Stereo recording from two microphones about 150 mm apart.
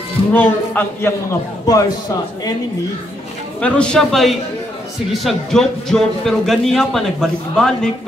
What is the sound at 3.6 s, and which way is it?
A man's voice, 5° left (ahead or behind).